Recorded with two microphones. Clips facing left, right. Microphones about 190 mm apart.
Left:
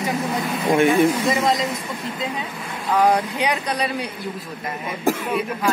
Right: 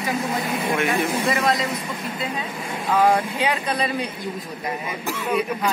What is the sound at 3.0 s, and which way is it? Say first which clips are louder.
Speech: left 1 dB; 10° right (ahead or behind).